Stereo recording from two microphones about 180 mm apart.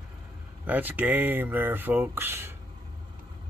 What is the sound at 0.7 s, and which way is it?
Speech, 10° right (ahead or behind).